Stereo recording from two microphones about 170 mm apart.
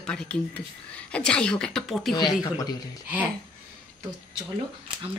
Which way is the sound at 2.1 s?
25° left (ahead or behind).